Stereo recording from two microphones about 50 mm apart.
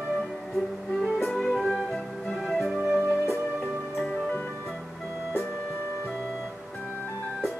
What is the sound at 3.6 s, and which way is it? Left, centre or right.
Music, centre.